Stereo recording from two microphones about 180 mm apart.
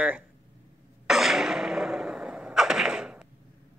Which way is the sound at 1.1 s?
Centre (ahead or behind).